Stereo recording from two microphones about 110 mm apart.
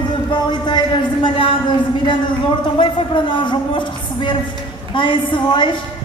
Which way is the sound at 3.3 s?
45° left (ahead or behind).